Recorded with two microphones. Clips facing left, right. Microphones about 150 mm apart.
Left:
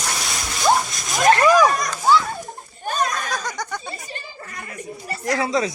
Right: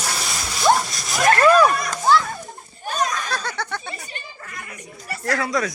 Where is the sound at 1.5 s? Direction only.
10° left (ahead or behind).